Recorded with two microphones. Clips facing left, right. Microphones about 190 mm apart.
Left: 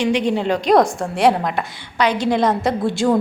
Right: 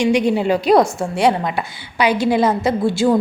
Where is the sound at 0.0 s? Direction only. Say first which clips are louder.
Right 2 dB; 10° right (ahead or behind).